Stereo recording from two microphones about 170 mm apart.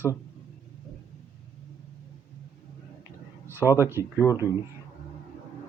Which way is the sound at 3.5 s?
15° right (ahead or behind).